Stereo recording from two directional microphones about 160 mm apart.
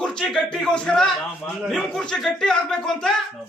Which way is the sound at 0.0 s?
5° left (ahead or behind).